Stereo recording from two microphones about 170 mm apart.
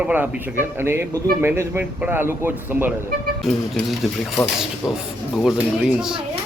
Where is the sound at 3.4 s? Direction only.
Centre (ahead or behind).